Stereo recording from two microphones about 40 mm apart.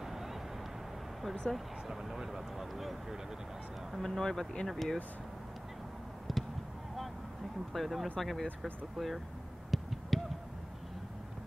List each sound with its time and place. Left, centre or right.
0.0 s vehicle: centre
1.5 s speech: left
1.9 s speech: centre
4.0 s speech: centre
6.3 s a sound: centre
7.7 s speech: centre
9.7 s a sound: centre